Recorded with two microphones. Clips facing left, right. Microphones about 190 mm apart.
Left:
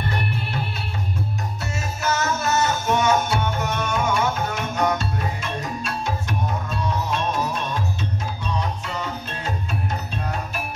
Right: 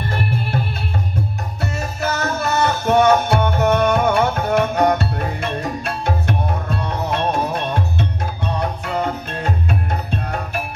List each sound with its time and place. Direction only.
1.6 s music: 60° right (ahead or behind)